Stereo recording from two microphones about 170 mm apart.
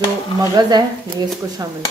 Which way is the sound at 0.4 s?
25° right (ahead or behind).